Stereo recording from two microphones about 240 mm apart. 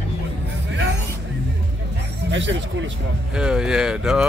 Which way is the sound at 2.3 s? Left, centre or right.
Right.